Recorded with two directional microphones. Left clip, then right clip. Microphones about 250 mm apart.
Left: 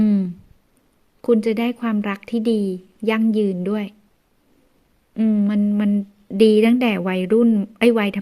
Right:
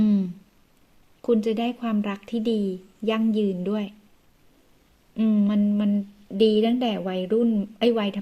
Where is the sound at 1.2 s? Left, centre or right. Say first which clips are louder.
Left 5 dB; left.